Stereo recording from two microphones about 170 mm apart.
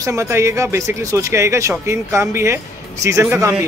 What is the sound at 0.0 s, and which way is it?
Speech, 20° right (ahead or behind).